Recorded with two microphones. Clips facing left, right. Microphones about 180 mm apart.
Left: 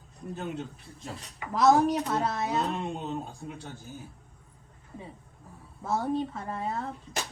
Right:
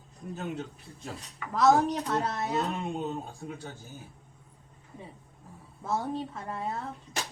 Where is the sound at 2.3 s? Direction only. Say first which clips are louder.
Left 1 dB; 20° left (ahead or behind).